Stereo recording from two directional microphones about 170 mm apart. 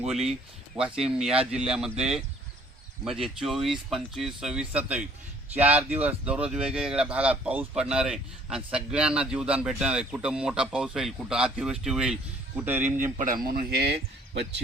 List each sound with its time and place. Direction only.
0.0 s speech: 5° right (ahead or behind)
13.0 s speech: 50° right (ahead or behind); by 14.4 s 75° right (ahead or behind)